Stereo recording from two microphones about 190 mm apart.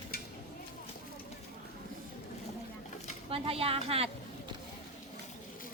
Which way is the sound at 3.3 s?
30° right (ahead or behind).